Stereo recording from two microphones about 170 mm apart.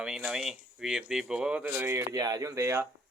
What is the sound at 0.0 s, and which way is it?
Speech, 5° right (ahead or behind).